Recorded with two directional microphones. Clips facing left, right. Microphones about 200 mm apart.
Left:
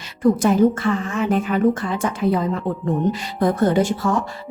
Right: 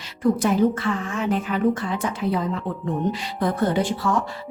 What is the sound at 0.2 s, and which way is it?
Speech, 45° left (ahead or behind).